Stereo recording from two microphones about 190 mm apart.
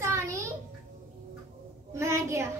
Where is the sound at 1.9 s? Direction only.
15° right (ahead or behind).